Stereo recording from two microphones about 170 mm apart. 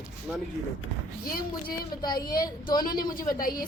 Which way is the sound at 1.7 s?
25° left (ahead or behind).